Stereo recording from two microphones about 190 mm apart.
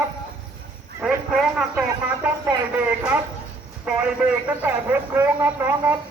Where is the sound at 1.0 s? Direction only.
Centre (ahead or behind).